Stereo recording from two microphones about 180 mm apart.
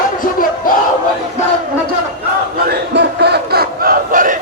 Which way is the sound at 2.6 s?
65° right (ahead or behind).